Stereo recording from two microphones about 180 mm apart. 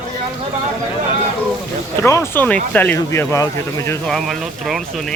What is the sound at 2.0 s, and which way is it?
Speech, 15° left (ahead or behind).